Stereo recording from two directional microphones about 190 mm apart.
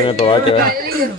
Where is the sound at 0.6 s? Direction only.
50° right (ahead or behind).